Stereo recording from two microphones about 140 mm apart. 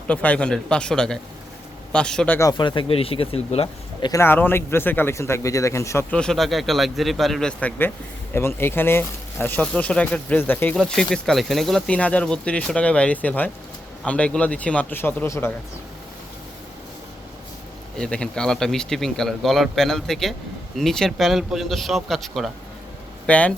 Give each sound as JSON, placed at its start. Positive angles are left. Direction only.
{"t": 0.1, "sound": "a man's voice", "side_deg": 10}
{"t": 2.4, "sound": "speech", "side_deg": 30}
{"t": 4.1, "sound": "a man's voice", "side_deg": 15}
{"t": 6.1, "sound": "a man's voice", "side_deg": 5}
{"t": 10.8, "sound": "a man's voice", "side_deg": 5}
{"t": 17.9, "sound": "a man's voice", "side_deg": 5}